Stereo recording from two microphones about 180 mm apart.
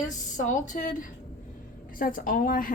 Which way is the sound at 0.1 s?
45° left (ahead or behind).